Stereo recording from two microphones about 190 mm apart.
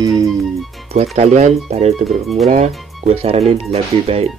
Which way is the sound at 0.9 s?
35° right (ahead or behind).